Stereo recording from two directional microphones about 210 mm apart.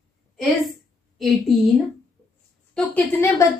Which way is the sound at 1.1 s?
Centre (ahead or behind).